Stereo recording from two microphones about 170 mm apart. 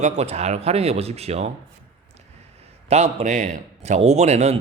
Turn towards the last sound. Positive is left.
turn(degrees=-40)  # may be behind; listen again after turning